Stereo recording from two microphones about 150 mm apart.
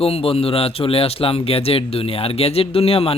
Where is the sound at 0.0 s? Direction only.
40° left (ahead or behind).